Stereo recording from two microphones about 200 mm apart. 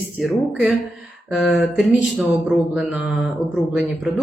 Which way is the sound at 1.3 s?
5° right (ahead or behind).